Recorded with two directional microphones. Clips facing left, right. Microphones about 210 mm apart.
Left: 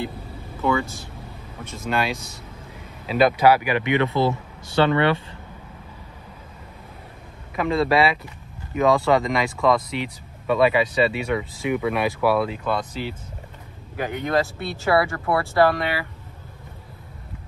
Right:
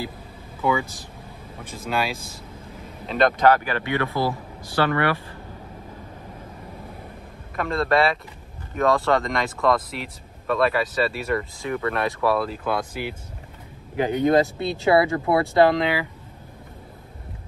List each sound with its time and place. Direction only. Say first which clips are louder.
0.6 s speech: left 1 dB; 15° right (ahead or behind)
1.9 s speech: left 1 dB; centre (ahead or behind); by 5.1 s 25° left (ahead or behind)
7.5 s speech: left 2 dB; centre (ahead or behind); by 16.1 s 20° right (ahead or behind)